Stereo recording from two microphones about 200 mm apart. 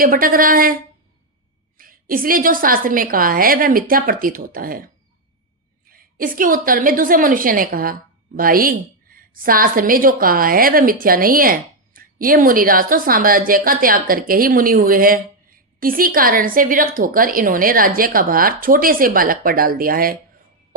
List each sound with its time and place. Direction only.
0.0 s a woman's voice: 45° right (ahead or behind)
1.8 s a woman's voice: 45° right (ahead or behind)
5.9 s a woman's voice: 45° right (ahead or behind)